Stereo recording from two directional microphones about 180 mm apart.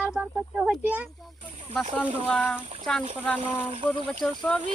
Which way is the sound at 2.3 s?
10° left (ahead or behind).